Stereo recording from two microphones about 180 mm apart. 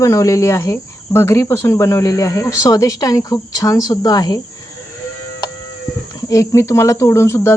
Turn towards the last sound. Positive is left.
turn(degrees=15)  # may be behind; listen again after turning